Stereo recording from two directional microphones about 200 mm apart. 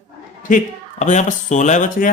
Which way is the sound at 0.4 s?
40° left (ahead or behind).